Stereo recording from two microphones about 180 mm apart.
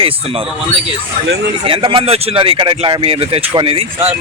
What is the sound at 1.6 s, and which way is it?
Speech, 30° right (ahead or behind).